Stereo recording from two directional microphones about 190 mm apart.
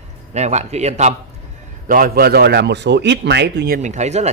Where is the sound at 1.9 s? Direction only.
50° right (ahead or behind).